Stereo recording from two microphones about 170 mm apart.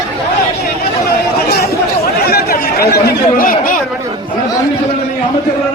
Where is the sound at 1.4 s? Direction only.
70° left (ahead or behind).